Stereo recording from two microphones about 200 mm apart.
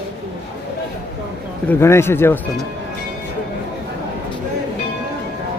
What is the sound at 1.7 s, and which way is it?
Speech, 10° left (ahead or behind).